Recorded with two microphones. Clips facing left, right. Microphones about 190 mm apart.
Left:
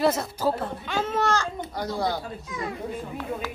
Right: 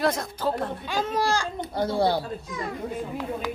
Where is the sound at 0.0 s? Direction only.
5° left (ahead or behind).